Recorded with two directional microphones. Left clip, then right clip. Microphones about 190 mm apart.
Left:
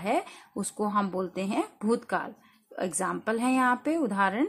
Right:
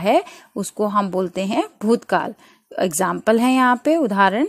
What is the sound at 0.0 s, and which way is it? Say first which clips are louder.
Speech: right 11 dB; 35° right (ahead or behind).